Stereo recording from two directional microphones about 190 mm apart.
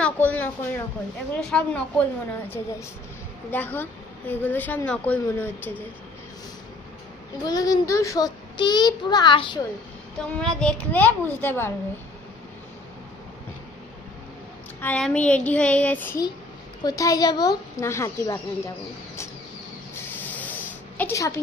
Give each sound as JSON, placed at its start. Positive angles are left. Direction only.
{"t": 0.0, "sound": "a woman's voice", "side_deg": 10}
{"t": 7.4, "sound": "a child's voice", "side_deg": 20}
{"t": 10.2, "sound": "a woman's voice", "side_deg": 5}
{"t": 14.8, "sound": "a woman's voice", "side_deg": 5}
{"t": 20.2, "sound": "spray", "side_deg": 10}
{"t": 21.0, "sound": "a woman's voice", "side_deg": 15}